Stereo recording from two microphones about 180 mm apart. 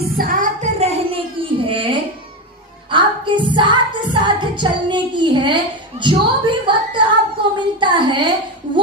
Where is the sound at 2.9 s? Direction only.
25° right (ahead or behind).